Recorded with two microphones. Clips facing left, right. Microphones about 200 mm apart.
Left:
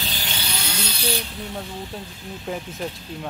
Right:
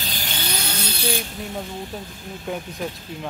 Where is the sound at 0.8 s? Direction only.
50° right (ahead or behind).